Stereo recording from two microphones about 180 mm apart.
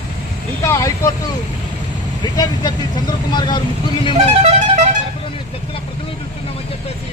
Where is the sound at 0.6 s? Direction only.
15° left (ahead or behind).